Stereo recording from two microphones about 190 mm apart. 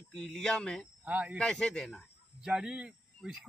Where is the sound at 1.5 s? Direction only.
5° left (ahead or behind).